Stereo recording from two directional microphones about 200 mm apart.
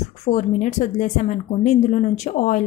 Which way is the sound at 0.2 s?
35° left (ahead or behind).